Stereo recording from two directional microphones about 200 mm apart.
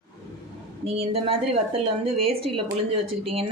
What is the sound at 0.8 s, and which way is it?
A woman's voice, 30° right (ahead or behind).